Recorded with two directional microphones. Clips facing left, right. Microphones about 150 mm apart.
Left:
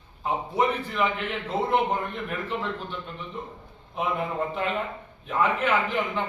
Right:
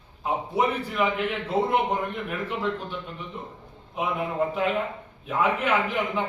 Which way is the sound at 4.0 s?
5° right (ahead or behind).